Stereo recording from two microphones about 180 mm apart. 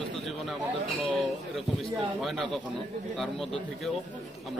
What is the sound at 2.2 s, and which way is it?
Speech, centre (ahead or behind).